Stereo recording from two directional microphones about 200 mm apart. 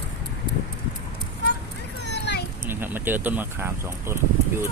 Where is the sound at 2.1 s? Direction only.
55° left (ahead or behind).